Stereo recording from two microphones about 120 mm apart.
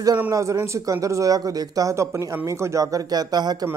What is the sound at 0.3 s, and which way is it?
Speech, 25° right (ahead or behind).